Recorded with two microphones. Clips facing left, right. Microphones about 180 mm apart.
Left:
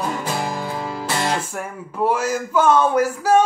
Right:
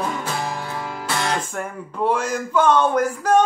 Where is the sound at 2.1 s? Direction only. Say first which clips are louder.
Even; 5° left (ahead or behind).